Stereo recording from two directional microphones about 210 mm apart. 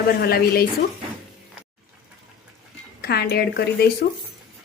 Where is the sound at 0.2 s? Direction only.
45° left (ahead or behind).